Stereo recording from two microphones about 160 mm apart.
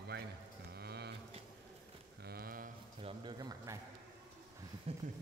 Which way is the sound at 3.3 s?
25° right (ahead or behind).